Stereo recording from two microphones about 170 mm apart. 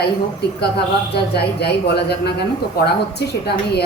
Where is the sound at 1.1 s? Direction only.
75° left (ahead or behind).